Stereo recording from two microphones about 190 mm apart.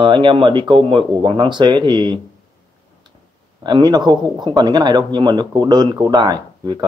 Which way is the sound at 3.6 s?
20° right (ahead or behind).